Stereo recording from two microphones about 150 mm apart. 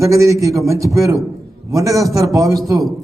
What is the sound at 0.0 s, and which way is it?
A man's voice, 20° right (ahead or behind).